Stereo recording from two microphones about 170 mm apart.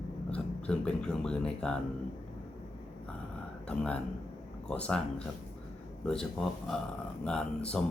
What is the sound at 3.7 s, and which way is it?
Speech, 5° left (ahead or behind).